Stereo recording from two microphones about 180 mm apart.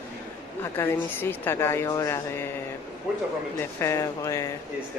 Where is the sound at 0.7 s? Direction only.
10° left (ahead or behind).